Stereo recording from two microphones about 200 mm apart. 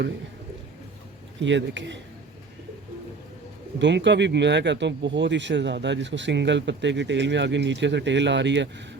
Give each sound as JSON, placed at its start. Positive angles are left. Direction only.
{"t": 1.4, "sound": "speech", "side_deg": -65}
{"t": 3.8, "sound": "speech", "side_deg": -65}